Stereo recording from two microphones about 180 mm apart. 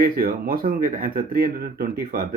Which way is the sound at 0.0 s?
55° right (ahead or behind).